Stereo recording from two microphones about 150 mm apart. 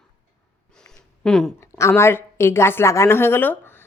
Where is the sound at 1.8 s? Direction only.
15° left (ahead or behind).